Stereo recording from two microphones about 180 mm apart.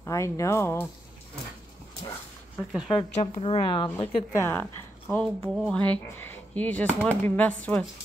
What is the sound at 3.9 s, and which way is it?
Speech, 15° left (ahead or behind).